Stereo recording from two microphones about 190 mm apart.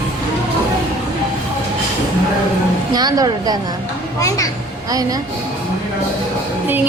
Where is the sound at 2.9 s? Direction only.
20° right (ahead or behind).